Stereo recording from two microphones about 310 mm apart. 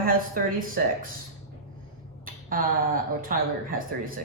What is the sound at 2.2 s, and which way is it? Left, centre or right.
Speech, right.